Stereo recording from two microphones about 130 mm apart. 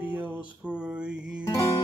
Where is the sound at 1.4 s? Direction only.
25° left (ahead or behind).